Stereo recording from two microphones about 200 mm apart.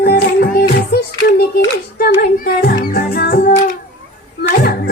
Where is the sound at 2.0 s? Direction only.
45° left (ahead or behind).